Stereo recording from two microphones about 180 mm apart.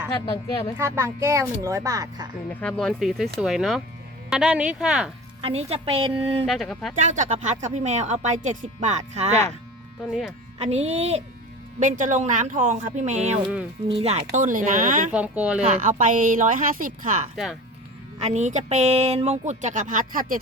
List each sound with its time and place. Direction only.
0.8 s speech: 15° right (ahead or behind)
2.5 s speech: 5° left (ahead or behind)
5.4 s speech: 35° right (ahead or behind)
6.5 s speech: centre (ahead or behind)
7.0 s speech: 40° right (ahead or behind)
10.0 s speech: centre (ahead or behind)
10.6 s speech: 35° right (ahead or behind)
14.3 s speech: 45° right (ahead or behind)
15.1 s speech: 5° right (ahead or behind)
15.8 s speech: 45° right (ahead or behind)
17.3 s speech: centre (ahead or behind)
18.2 s speech: 40° right (ahead or behind)